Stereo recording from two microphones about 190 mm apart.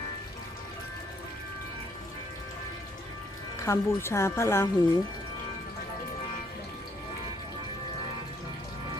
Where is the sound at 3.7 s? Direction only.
15° left (ahead or behind).